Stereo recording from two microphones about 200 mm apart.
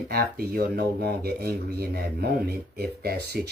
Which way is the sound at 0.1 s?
50° right (ahead or behind).